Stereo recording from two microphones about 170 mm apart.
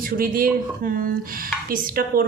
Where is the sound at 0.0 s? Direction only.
55° right (ahead or behind).